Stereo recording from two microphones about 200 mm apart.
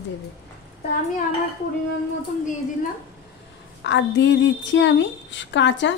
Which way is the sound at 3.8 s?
65° left (ahead or behind).